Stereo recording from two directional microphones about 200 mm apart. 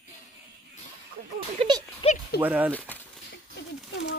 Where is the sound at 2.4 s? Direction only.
10° right (ahead or behind).